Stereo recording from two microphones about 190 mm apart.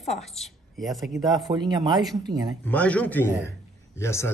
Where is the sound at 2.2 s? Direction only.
20° right (ahead or behind).